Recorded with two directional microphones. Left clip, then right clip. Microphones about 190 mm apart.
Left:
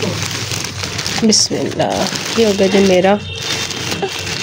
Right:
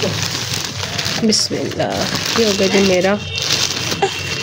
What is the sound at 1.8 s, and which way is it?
Speech, 25° left (ahead or behind).